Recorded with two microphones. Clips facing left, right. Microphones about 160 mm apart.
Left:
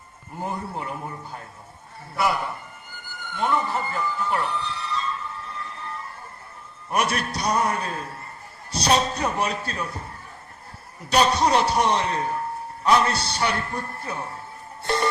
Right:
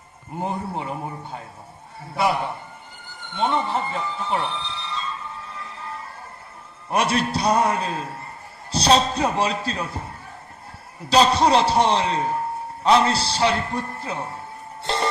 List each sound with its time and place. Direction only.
0.3 s a man's voice: 25° right (ahead or behind)
6.9 s a man's voice: 30° right (ahead or behind)
11.1 s a man's voice: 30° right (ahead or behind)